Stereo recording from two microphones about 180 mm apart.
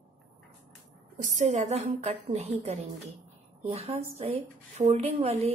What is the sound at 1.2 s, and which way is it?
Speech, 40° right (ahead or behind).